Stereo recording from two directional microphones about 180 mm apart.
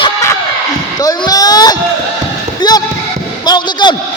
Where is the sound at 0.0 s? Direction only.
15° left (ahead or behind).